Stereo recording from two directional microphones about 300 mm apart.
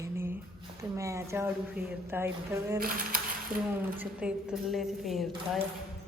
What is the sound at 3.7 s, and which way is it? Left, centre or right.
A woman's voice, centre.